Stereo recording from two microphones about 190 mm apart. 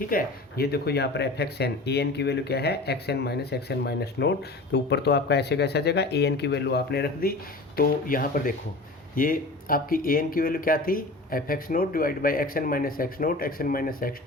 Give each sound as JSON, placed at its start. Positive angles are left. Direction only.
{"t": 0.1, "sound": "speech", "side_deg": 50}